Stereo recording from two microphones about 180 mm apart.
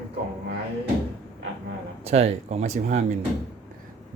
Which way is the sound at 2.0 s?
35° right (ahead or behind).